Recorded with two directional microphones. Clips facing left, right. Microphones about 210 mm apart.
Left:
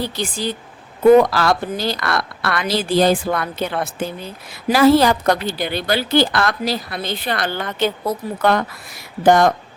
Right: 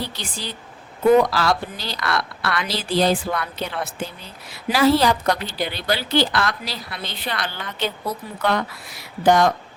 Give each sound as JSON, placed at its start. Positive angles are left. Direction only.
{"t": 0.0, "sound": "a woman's voice", "side_deg": 45}